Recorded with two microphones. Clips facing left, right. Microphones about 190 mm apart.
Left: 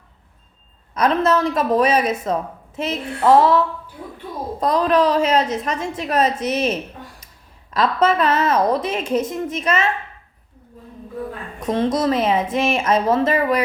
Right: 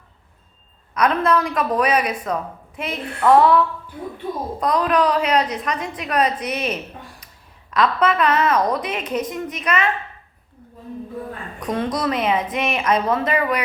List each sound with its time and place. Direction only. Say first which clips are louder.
0.9 s a woman's voice: left 1 dB; 25° left (ahead or behind)
11.6 s a woman's voice: left 4 dB; 25° left (ahead or behind)